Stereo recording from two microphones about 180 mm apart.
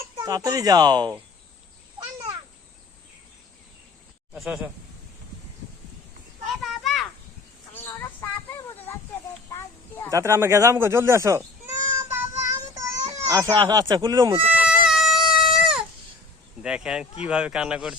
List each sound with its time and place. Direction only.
0.3 s speech: 20° right (ahead or behind)
4.4 s speech: 5° right (ahead or behind)
6.6 s children playing: centre (ahead or behind)
7.7 s a sound: 10° left (ahead or behind)
10.1 s speech: 15° right (ahead or behind)
12.1 s child singing: 15° right (ahead or behind)
14.5 s a sound: 5° right (ahead or behind)
16.6 s speech: 5° right (ahead or behind)